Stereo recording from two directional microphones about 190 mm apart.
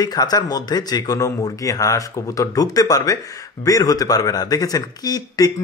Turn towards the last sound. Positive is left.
turn(degrees=20)  # may be behind; listen again after turning